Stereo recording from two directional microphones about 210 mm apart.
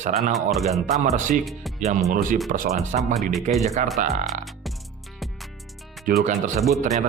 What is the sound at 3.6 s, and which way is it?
Speech, 35° right (ahead or behind).